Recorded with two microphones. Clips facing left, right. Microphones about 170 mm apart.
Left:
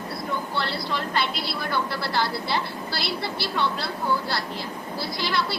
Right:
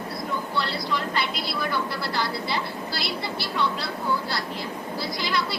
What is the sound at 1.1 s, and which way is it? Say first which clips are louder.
Speech: left 1 dB; 60° left (ahead or behind).